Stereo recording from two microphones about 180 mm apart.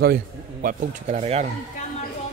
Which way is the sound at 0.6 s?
35° right (ahead or behind).